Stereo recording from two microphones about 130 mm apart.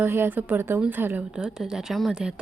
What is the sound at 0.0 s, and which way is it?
A woman's voice, 15° right (ahead or behind).